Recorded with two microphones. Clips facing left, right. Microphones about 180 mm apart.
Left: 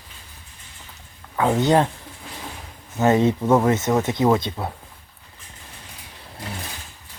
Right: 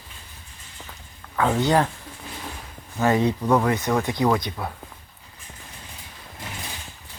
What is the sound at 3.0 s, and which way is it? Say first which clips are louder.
Speech: left 3 dB; 20° left (ahead or behind).